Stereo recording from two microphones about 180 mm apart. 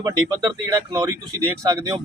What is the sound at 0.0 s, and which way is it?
Speech, 20° right (ahead or behind).